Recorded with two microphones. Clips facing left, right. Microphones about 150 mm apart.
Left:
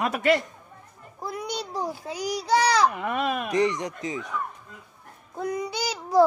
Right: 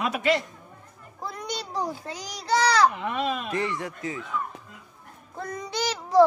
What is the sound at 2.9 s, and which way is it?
Speech, 50° left (ahead or behind).